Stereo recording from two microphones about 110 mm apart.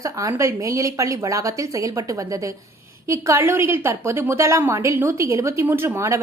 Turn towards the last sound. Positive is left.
turn(degrees=-25)  # may be behind; listen again after turning